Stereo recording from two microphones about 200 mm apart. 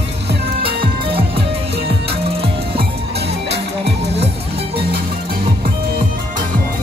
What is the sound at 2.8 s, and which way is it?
Music, 55° right (ahead or behind).